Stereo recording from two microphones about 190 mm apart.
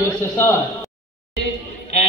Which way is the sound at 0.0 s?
10° left (ahead or behind).